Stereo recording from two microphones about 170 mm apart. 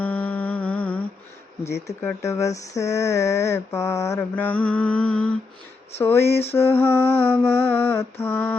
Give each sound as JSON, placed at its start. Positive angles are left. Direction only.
{"t": 0.0, "sound": "music", "side_deg": 10}
{"t": 2.0, "sound": "mantra", "side_deg": 15}